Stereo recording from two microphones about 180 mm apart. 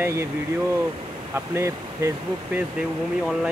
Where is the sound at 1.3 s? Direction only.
15° right (ahead or behind).